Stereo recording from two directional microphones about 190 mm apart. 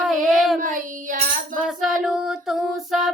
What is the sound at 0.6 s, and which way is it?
Child singing, 45° right (ahead or behind).